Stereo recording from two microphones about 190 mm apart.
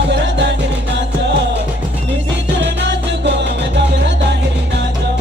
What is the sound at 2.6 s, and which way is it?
Music, 65° right (ahead or behind).